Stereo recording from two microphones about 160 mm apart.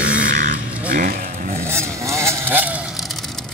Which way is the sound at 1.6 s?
15° right (ahead or behind).